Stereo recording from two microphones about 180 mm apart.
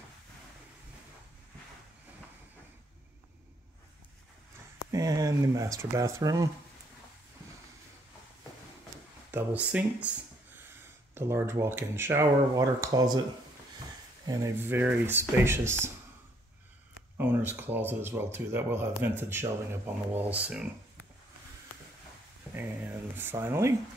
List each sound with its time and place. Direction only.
4.9 s speech: 20° right (ahead or behind)
9.3 s speech: 10° right (ahead or behind)
11.1 s speech: 15° right (ahead or behind)
14.2 s speech: 15° right (ahead or behind)
17.2 s speech: 10° right (ahead or behind)
22.5 s speech: 10° right (ahead or behind)